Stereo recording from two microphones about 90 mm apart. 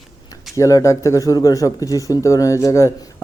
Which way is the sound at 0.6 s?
40° left (ahead or behind).